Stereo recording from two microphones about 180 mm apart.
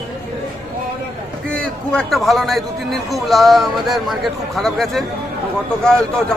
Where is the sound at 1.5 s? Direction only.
5° left (ahead or behind).